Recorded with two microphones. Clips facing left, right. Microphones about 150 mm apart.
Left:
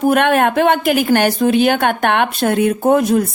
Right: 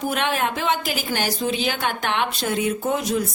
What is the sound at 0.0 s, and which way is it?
A woman's voice, 55° left (ahead or behind).